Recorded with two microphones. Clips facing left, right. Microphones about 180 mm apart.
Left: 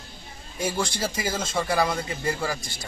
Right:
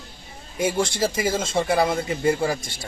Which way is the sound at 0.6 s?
25° right (ahead or behind).